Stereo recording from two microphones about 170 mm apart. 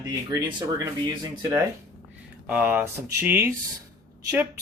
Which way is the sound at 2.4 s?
10° right (ahead or behind).